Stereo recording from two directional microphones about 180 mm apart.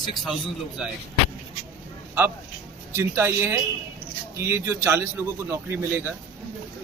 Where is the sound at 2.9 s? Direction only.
15° right (ahead or behind).